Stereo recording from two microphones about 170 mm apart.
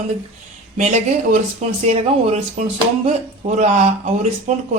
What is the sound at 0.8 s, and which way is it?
Speech, 45° right (ahead or behind).